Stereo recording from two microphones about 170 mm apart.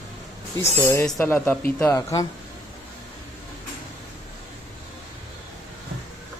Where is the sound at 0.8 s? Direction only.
15° left (ahead or behind).